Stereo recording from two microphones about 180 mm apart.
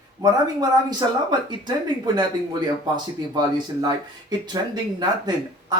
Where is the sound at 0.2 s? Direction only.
20° right (ahead or behind).